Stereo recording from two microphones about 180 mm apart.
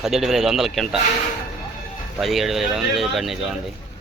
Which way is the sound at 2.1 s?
Centre (ahead or behind).